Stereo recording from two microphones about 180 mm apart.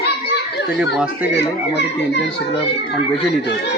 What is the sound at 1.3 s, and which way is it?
Speech, 75° left (ahead or behind).